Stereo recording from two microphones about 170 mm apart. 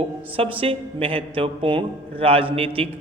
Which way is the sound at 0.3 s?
35° right (ahead or behind).